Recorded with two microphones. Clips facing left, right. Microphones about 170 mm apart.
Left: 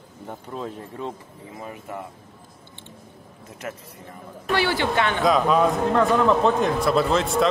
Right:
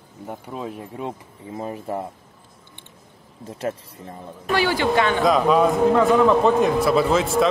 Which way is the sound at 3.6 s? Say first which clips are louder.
Right 7 dB; 30° right (ahead or behind).